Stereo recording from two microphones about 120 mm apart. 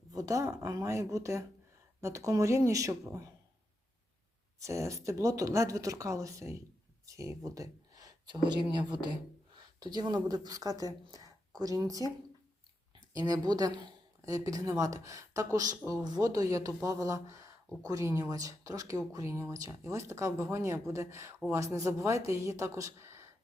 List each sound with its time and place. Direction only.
0.1 s speech: 30° right (ahead or behind)
4.6 s speech: 25° right (ahead or behind)
13.1 s speech: 35° right (ahead or behind)